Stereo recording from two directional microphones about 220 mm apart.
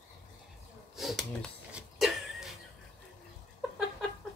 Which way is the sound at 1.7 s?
5° right (ahead or behind).